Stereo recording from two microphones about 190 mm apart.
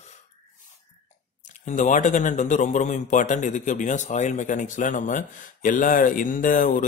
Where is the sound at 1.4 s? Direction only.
40° left (ahead or behind).